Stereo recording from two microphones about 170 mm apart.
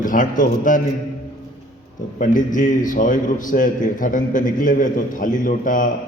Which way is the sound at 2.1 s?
50° left (ahead or behind).